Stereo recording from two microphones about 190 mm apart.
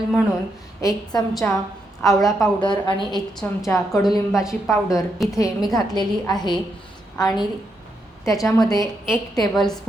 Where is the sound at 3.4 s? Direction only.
10° left (ahead or behind).